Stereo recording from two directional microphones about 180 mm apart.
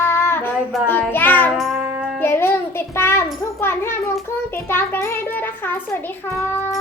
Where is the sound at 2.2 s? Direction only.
15° left (ahead or behind).